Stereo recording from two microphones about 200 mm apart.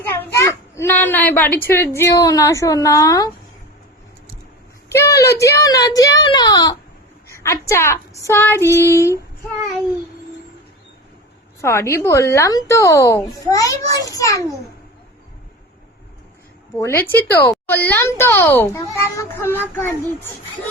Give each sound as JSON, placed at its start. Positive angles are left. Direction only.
{"t": 0.1, "sound": "a child's voice", "side_deg": 15}
{"t": 4.9, "sound": "speech", "side_deg": 15}
{"t": 7.3, "sound": "a sound", "side_deg": 15}
{"t": 7.7, "sound": "speech", "side_deg": 15}
{"t": 11.6, "sound": "speech", "side_deg": 15}
{"t": 16.7, "sound": "speech", "side_deg": 10}